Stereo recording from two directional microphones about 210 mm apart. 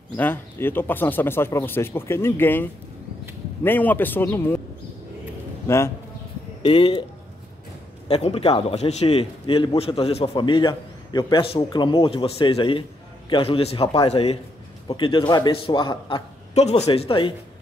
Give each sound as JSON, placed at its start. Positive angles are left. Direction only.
{"t": 0.1, "sound": "speech", "side_deg": 10}
{"t": 5.7, "sound": "speech", "side_deg": 10}
{"t": 6.6, "sound": "a man's voice", "side_deg": 25}
{"t": 8.1, "sound": "a man's voice", "side_deg": 25}